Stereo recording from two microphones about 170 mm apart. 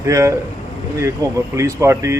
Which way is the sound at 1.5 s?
15° right (ahead or behind).